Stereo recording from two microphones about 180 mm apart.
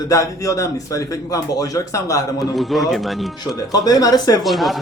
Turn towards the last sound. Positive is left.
turn(degrees=0)  # may be behind; listen again after turning